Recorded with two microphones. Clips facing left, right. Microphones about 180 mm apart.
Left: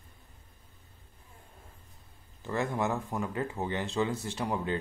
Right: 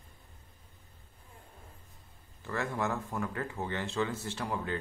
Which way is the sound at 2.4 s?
20° left (ahead or behind).